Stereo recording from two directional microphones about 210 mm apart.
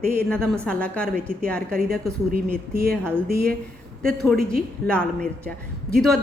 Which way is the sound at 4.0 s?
45° right (ahead or behind).